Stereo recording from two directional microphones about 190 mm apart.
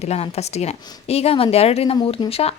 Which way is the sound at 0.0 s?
35° left (ahead or behind).